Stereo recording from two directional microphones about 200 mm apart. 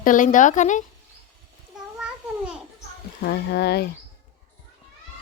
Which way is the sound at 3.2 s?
55° left (ahead or behind).